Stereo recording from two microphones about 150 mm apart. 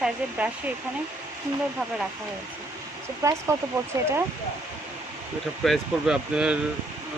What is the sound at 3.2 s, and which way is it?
Speech, 20° right (ahead or behind).